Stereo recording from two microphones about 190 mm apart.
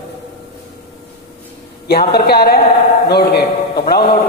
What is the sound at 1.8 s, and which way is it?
A man's voice, 55° left (ahead or behind).